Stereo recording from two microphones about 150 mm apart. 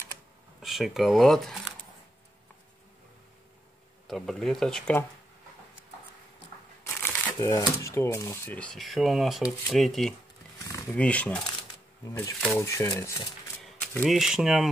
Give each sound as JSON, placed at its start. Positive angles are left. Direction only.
{"t": 0.6, "sound": "speech", "side_deg": 0}
{"t": 4.1, "sound": "speech", "side_deg": 0}
{"t": 7.1, "sound": "speech", "side_deg": 20}
{"t": 8.5, "sound": "speech", "side_deg": 5}
{"t": 10.7, "sound": "roaring cats", "side_deg": 20}
{"t": 11.0, "sound": "speech", "side_deg": 10}
{"t": 12.1, "sound": "speech", "side_deg": 20}
{"t": 13.7, "sound": "speech", "side_deg": 0}